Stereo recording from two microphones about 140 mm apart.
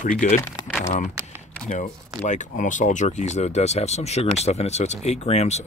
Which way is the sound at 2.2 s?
60° left (ahead or behind).